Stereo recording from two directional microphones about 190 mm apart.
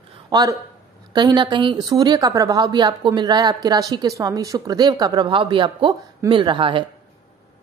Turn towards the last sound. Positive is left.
turn(degrees=-25)  # may be behind; listen again after turning